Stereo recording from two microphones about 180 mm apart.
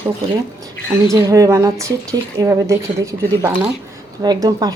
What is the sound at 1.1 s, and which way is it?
A woman's voice, 20° right (ahead or behind).